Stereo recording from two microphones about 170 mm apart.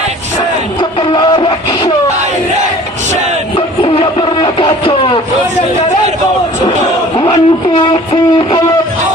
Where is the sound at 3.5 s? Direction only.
35° left (ahead or behind).